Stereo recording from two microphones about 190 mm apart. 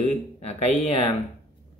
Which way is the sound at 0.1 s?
35° left (ahead or behind).